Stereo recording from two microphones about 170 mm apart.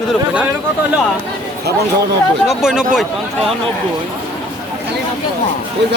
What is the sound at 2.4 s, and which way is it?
Speech, 5° right (ahead or behind).